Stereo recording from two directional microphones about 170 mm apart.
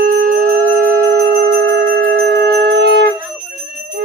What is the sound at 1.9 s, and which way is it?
Wind instrument, 70° right (ahead or behind).